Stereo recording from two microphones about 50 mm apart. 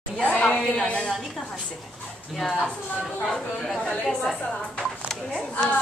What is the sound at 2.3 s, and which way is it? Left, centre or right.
A woman's voice, centre.